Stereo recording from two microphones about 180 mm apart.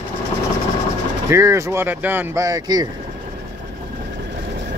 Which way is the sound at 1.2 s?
15° right (ahead or behind).